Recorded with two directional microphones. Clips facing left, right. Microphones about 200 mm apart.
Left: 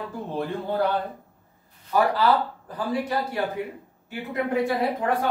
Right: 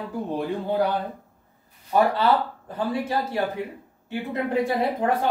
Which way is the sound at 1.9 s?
25° right (ahead or behind).